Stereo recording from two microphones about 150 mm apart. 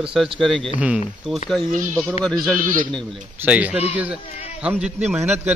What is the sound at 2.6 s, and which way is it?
Speech, 65° right (ahead or behind).